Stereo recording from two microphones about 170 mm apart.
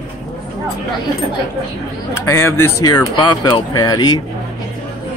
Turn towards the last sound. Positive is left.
turn(degrees=20)  # may be behind; listen again after turning